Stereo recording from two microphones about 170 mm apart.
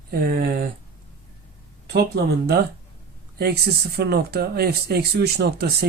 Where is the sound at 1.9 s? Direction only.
70° right (ahead or behind).